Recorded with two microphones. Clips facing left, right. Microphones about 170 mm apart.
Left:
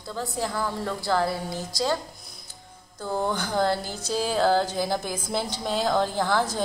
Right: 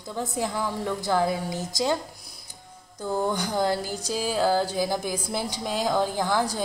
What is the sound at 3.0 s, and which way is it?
Speech, 15° right (ahead or behind).